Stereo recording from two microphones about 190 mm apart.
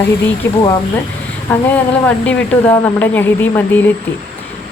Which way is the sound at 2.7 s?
10° left (ahead or behind).